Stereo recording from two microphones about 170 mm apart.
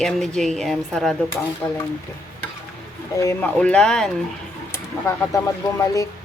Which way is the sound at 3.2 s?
10° left (ahead or behind).